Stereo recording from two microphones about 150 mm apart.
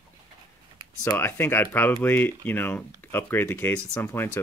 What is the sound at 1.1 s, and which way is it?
Speech, 10° left (ahead or behind).